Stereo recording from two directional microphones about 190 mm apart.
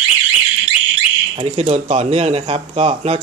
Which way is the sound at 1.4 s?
30° right (ahead or behind).